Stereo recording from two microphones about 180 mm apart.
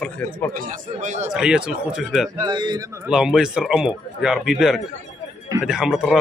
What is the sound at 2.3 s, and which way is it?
Speech, 25° right (ahead or behind).